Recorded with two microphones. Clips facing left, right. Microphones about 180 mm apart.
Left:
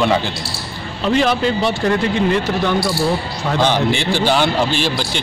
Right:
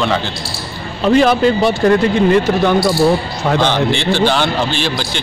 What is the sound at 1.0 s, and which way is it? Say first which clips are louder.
Speech: right 5 dB; 45° right (ahead or behind).